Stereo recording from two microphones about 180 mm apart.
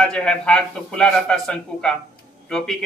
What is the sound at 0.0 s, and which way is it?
A man's voice, 5° left (ahead or behind).